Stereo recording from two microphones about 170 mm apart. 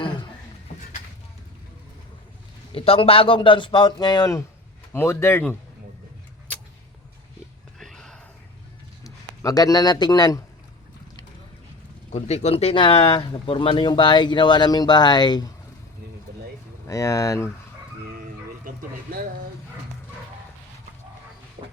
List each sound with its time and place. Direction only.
2.7 s speech: 35° left (ahead or behind); by 5.5 s 15° left (ahead or behind)
7.8 s a sound: 5° left (ahead or behind)
9.0 s speech: 20° left (ahead or behind)
12.1 s speech: 40° left (ahead or behind); by 15.5 s 25° left (ahead or behind)
16.8 s speech: 20° left (ahead or behind)
21.6 s music: 35° right (ahead or behind)